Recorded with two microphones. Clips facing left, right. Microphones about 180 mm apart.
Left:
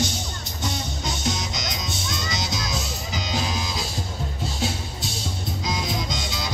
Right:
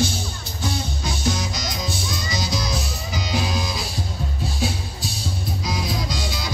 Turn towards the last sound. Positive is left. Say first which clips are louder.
# right 1 dB
turn(degrees=20)  # may be behind; listen again after turning